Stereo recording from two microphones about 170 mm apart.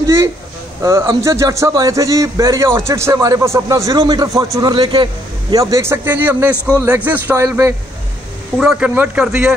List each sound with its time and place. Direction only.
0.0 s a sound: 15° right (ahead or behind)
0.8 s a man's voice: 15° right (ahead or behind)
6.5 s a man's voice: 10° left (ahead or behind)
6.8 s speech: 10° right (ahead or behind)
8.5 s speech: 5° right (ahead or behind)